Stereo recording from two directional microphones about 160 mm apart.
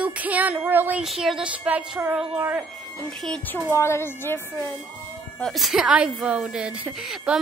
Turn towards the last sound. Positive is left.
turn(degrees=0)  # may be behind; listen again after turning